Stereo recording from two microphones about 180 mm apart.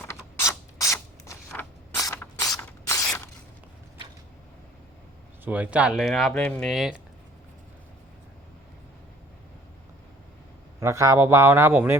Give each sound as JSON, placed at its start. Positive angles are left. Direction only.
{"t": 0.3, "sound": "mechanisms", "side_deg": 20}
{"t": 0.9, "sound": "a sound", "side_deg": 10}
{"t": 2.6, "sound": "ratchet", "side_deg": 15}
{"t": 5.5, "sound": "speech", "side_deg": -5}
{"t": 10.8, "sound": "a man's voice", "side_deg": -15}